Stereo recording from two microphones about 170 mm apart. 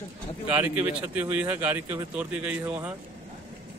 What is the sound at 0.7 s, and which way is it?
Speech, 10° right (ahead or behind).